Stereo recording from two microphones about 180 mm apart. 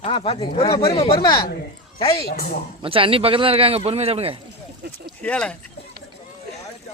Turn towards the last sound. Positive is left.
turn(degrees=5)  # may be behind; listen again after turning